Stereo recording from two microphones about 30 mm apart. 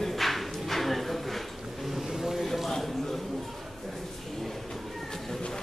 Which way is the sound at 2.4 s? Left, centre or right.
Centre.